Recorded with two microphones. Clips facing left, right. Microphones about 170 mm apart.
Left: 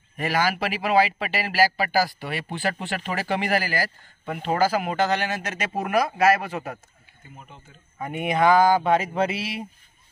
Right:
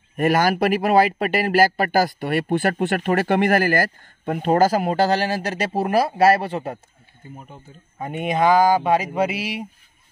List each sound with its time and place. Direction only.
0.2 s speech: 50° right (ahead or behind); by 6.8 s 30° right (ahead or behind)
8.0 s speech: 20° right (ahead or behind)